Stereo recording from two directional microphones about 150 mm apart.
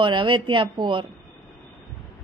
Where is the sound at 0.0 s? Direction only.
35° right (ahead or behind).